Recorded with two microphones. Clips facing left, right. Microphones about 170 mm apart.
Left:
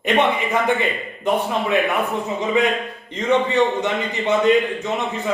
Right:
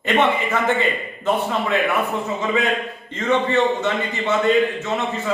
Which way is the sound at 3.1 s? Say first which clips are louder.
Left 1 dB; 15° left (ahead or behind).